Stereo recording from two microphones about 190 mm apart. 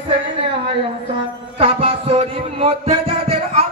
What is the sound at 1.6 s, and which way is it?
Music, 30° right (ahead or behind).